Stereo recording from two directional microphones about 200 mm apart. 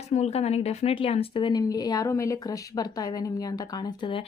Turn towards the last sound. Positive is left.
turn(degrees=20)  # may be behind; listen again after turning